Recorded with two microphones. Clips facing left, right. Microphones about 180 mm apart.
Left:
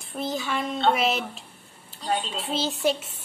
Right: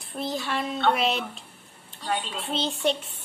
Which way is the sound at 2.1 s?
30° left (ahead or behind).